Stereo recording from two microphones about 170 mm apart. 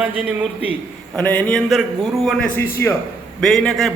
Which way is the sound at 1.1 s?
10° left (ahead or behind).